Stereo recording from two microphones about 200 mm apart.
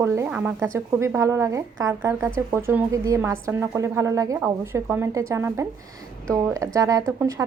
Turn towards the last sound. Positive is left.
turn(degrees=-15)  # may be behind; listen again after turning